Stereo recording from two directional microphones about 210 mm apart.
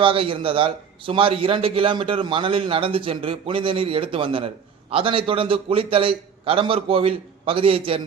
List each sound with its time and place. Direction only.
0.0 s a man's voice: 25° right (ahead or behind)